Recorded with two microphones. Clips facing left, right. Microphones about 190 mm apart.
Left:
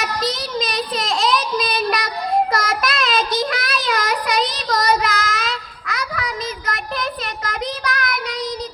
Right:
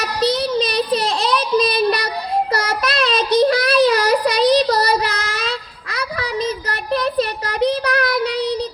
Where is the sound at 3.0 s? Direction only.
30° right (ahead or behind).